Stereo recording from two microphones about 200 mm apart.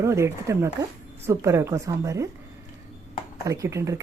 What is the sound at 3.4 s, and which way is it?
Speech, 15° right (ahead or behind).